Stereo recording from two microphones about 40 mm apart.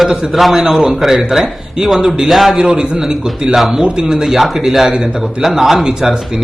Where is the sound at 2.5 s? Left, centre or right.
Right.